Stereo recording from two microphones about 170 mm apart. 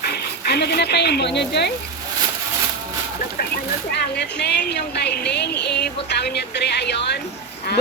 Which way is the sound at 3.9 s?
80° left.